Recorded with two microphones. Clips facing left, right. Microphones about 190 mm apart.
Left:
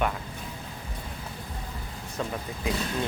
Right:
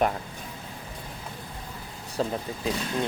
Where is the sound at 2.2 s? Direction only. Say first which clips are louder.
Right 5 dB; 35° right (ahead or behind).